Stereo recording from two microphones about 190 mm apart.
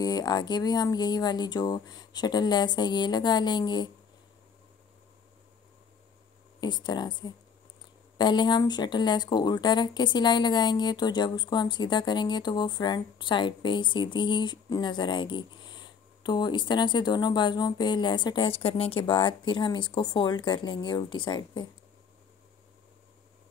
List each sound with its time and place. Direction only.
0.0 s speech: 20° left (ahead or behind)
6.6 s speech: 20° left (ahead or behind)